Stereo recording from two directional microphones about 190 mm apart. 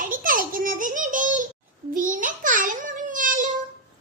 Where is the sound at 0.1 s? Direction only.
45° right (ahead or behind).